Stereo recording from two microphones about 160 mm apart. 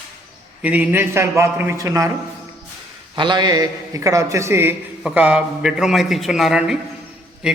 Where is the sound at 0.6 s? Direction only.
10° right (ahead or behind).